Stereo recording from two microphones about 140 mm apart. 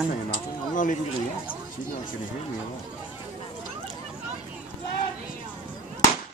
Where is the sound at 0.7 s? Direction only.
70° left (ahead or behind).